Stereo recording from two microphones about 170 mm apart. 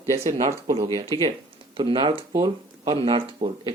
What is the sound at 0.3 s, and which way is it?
Speech, 25° right (ahead or behind).